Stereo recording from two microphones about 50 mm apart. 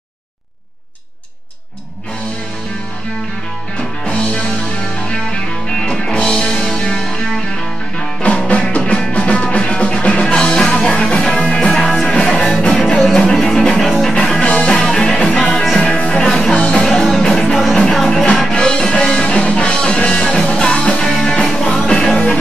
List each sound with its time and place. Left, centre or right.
4.0 s music: left
8.2 s music: left; by 14.1 s centre
14.1 s music: centre
14.7 s music: centre
16.2 s music: centre
16.5 s music: left
16.8 s music: centre
18.5 s music: centre